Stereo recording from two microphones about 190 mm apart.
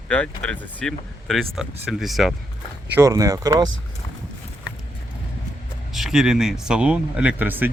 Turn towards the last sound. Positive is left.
turn(degrees=-10)  # may be behind; listen again after turning